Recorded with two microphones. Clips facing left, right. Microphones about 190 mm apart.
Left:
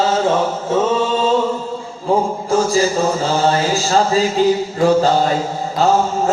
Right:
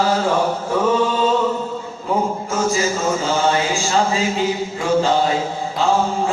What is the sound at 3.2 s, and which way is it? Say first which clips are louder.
Mantra: left 2 dB; 35° left (ahead or behind).